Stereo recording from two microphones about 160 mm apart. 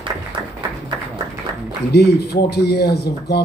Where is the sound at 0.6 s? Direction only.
25° right (ahead or behind).